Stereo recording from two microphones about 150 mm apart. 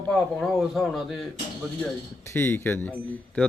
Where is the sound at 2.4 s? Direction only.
15° left (ahead or behind).